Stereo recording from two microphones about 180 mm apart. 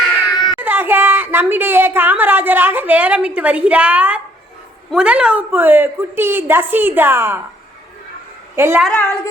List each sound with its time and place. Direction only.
0.3 s a sound: 25° left (ahead or behind)
0.6 s a woman's voice: 10° right (ahead or behind)
8.5 s a woman's voice: 15° right (ahead or behind)
8.8 s a woman's voice: 5° left (ahead or behind)